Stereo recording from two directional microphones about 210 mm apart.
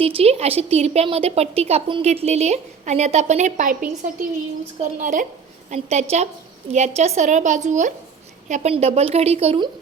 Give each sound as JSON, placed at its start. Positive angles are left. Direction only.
{"t": 0.0, "sound": "a woman's voice", "side_deg": -30}